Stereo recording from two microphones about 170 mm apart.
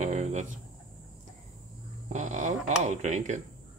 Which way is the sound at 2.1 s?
45° right (ahead or behind).